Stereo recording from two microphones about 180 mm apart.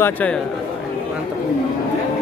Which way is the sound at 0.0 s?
10° left (ahead or behind).